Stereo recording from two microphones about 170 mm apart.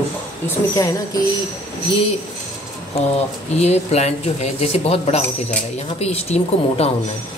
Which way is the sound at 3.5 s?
40° left (ahead or behind).